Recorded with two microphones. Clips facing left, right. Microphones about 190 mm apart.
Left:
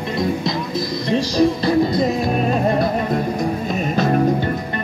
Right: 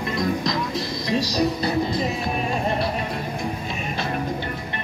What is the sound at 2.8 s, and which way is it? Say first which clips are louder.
Music: left 7 dB; 45° left (ahead or behind).